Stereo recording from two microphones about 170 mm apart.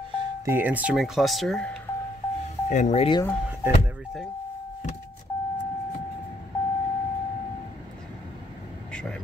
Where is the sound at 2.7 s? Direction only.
45° left (ahead or behind).